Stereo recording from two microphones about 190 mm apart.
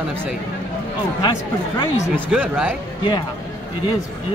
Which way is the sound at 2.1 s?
5° right (ahead or behind).